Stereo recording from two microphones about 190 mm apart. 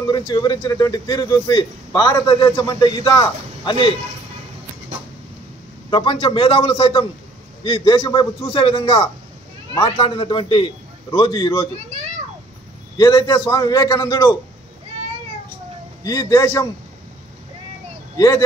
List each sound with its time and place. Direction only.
0.0 s speech: 20° left (ahead or behind)
5.9 s speech: 25° left (ahead or behind)
12.9 s speech: 20° left (ahead or behind)
16.0 s a man's voice: 20° left (ahead or behind)
18.1 s speech: 15° left (ahead or behind)